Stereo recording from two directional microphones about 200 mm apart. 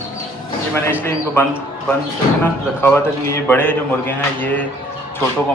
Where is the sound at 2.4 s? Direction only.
10° left (ahead or behind).